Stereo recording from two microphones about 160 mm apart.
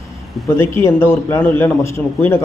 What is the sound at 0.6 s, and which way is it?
Speech, 15° left (ahead or behind).